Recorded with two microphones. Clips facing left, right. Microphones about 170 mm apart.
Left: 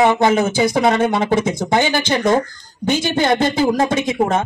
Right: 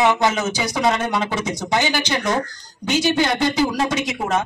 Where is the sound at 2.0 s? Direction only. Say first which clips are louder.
Left 5 dB; 55° left (ahead or behind).